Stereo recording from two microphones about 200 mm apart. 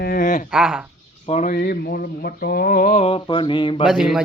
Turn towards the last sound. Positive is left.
turn(degrees=0)  # may be behind; listen again after turning